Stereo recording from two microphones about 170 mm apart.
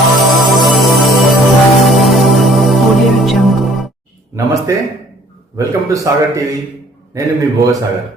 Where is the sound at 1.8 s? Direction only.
Centre (ahead or behind).